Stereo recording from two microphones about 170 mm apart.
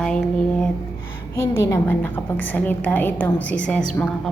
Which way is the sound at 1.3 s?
15° left (ahead or behind).